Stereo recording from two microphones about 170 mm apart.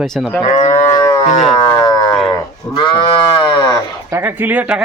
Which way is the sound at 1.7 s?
20° left (ahead or behind).